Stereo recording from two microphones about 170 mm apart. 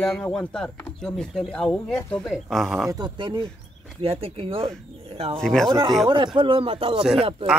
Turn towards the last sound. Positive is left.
turn(degrees=-30)  # may be behind; listen again after turning